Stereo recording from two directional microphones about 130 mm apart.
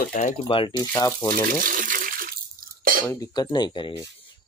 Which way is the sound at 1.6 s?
90° right.